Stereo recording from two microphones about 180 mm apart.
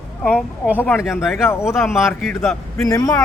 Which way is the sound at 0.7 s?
10° left (ahead or behind).